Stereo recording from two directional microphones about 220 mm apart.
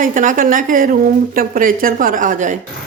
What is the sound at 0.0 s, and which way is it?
A woman's voice, 35° right (ahead or behind).